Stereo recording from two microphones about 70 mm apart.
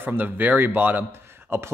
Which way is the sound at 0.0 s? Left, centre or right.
Right.